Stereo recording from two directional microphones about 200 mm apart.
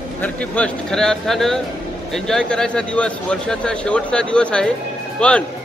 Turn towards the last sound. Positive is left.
turn(degrees=5)  # may be behind; listen again after turning